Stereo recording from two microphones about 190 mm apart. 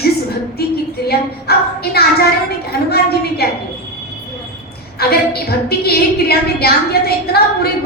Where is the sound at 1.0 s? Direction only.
55° left (ahead or behind).